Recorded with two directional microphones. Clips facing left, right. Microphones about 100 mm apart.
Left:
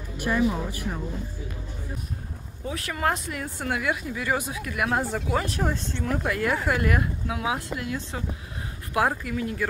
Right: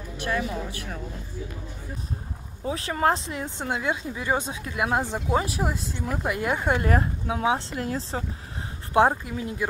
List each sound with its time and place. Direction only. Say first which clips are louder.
0.2 s speech: left 4 dB; 10° left (ahead or behind)
2.6 s speech: right 3 dB; 30° right (ahead or behind)
5.4 s a woman's voice: even; 10° right (ahead or behind); by 8.2 s 35° right (ahead or behind)
8.9 s speech: right 4 dB; 25° right (ahead or behind)